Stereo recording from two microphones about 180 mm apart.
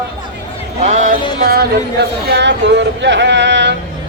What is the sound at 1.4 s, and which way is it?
Speech, 60° right (ahead or behind).